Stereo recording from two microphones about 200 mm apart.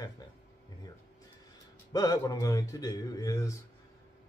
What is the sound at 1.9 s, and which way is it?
Speech, 20° left (ahead or behind).